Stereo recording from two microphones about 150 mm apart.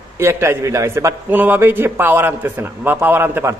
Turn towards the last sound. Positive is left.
turn(degrees=-15)  # may be behind; listen again after turning